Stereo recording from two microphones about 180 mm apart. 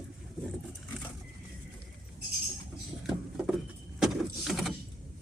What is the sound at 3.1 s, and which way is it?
Vehicle, centre (ahead or behind).